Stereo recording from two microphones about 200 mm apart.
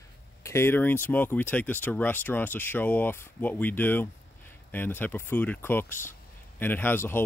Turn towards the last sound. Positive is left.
turn(degrees=10)  # may be behind; listen again after turning